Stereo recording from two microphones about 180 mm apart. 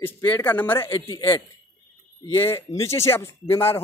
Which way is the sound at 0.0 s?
10° left (ahead or behind).